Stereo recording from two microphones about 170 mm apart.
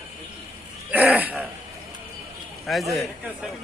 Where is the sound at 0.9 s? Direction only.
10° right (ahead or behind).